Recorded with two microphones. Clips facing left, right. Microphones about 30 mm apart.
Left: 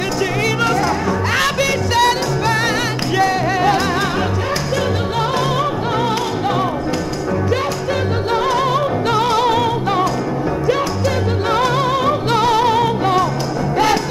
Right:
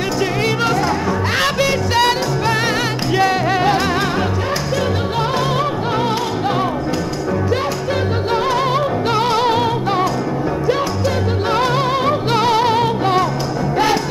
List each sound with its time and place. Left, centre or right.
0.7 s music: centre
1.3 s music: right
3.2 s music: right
8.3 s music: centre
8.7 s music: centre
11.5 s music: centre